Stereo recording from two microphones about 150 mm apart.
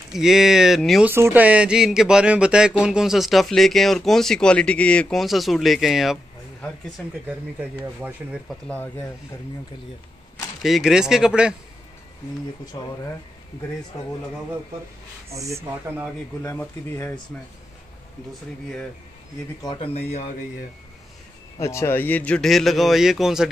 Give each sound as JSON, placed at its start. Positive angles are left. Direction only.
{"t": 0.1, "sound": "speech", "side_deg": -5}
{"t": 1.0, "sound": "speech", "side_deg": -15}
{"t": 8.0, "sound": "speech", "side_deg": -5}
{"t": 8.6, "sound": "speech", "side_deg": 10}
{"t": 10.6, "sound": "speech", "side_deg": 0}
{"t": 12.7, "sound": "speech", "side_deg": 30}
{"t": 15.3, "sound": "speech", "side_deg": -20}
{"t": 16.4, "sound": "speech", "side_deg": 15}
{"t": 19.7, "sound": "speech", "side_deg": 40}
{"t": 21.5, "sound": "speech", "side_deg": 20}